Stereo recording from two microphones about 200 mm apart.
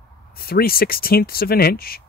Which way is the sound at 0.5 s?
50° left (ahead or behind).